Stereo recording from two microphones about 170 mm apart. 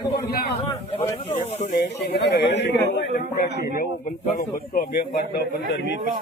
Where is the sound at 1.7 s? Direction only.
85° left.